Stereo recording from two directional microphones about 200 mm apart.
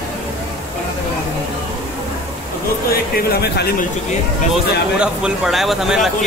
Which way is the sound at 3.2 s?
50° left (ahead or behind).